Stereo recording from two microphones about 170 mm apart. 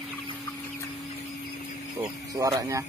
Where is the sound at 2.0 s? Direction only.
20° right (ahead or behind).